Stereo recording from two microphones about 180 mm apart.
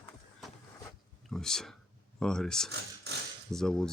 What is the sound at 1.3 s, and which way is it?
Speech, 5° left (ahead or behind).